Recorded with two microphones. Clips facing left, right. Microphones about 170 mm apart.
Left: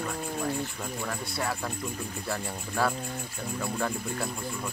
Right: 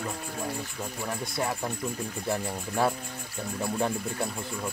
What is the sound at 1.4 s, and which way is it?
Speech, 20° right (ahead or behind).